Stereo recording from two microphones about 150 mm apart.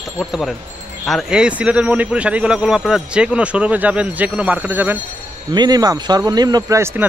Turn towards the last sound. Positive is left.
turn(degrees=-20)  # may be behind; listen again after turning